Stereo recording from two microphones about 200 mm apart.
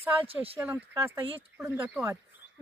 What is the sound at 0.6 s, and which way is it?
Speech, 10° right (ahead or behind).